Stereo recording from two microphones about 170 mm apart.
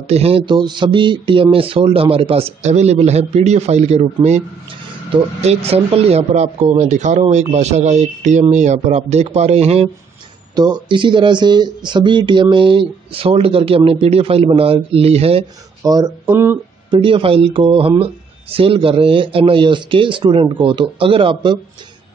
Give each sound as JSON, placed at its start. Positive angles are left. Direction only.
{"t": 0.0, "sound": "speech", "side_deg": -35}
{"t": 10.5, "sound": "speech", "side_deg": -25}
{"t": 15.8, "sound": "speech", "side_deg": -25}
{"t": 16.9, "sound": "speech", "side_deg": -30}